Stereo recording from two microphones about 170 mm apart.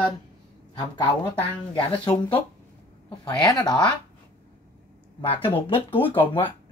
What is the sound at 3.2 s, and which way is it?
Speech, 25° left (ahead or behind).